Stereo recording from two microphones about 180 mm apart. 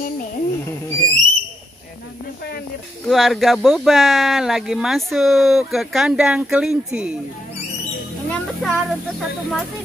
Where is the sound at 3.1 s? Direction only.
Centre (ahead or behind).